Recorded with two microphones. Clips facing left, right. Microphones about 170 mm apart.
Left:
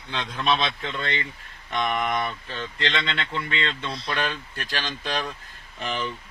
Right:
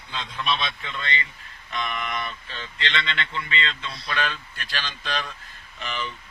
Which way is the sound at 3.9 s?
45° left (ahead or behind).